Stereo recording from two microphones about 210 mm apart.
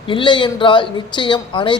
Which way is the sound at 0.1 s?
25° left (ahead or behind).